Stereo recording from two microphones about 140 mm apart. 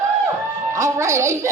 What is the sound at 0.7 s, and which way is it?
Speech, 20° right (ahead or behind).